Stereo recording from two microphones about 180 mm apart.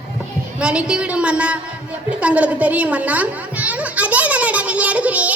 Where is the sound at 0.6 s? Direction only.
5° right (ahead or behind).